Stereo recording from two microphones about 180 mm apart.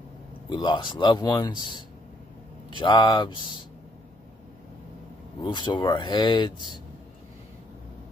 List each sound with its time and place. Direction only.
0.5 s a man's voice: 25° left (ahead or behind)
5.4 s a man's voice: 25° left (ahead or behind)